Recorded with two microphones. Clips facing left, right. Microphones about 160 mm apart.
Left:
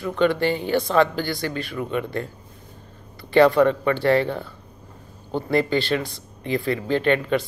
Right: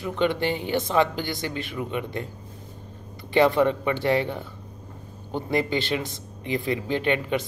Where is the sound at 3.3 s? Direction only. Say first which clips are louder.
Left 4 dB; 20° right (ahead or behind).